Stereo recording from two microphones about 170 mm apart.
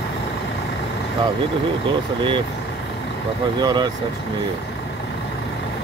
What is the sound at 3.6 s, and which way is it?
Speech, 25° right (ahead or behind).